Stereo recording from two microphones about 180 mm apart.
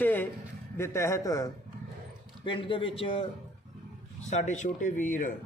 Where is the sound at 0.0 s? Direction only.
10° left (ahead or behind).